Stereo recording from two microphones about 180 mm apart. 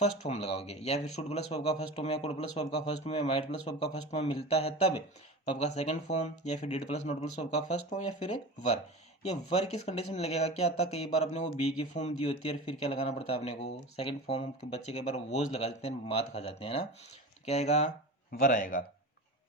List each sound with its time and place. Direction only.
0.0 s speech: 35° left (ahead or behind)
9.2 s speech: 35° left (ahead or behind)
18.3 s speech: 50° left (ahead or behind)